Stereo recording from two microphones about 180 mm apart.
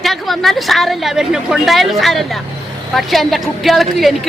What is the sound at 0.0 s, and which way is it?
Speech, centre (ahead or behind).